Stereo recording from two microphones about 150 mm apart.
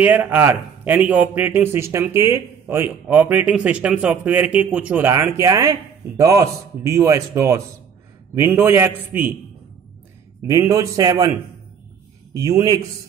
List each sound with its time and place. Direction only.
0.0 s speech: 10° right (ahead or behind)
10.4 s a man's voice: 20° right (ahead or behind)
12.4 s a man's voice: 25° right (ahead or behind)